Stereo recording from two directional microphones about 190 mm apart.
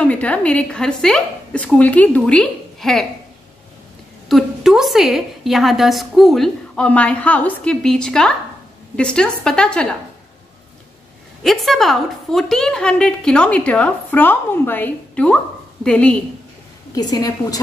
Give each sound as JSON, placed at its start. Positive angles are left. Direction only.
{"t": 0.0, "sound": "a woman's voice", "side_deg": 5}
{"t": 4.3, "sound": "a woman's voice", "side_deg": 0}
{"t": 11.4, "sound": "a woman's voice", "side_deg": 0}
{"t": 16.9, "sound": "a woman's voice", "side_deg": 20}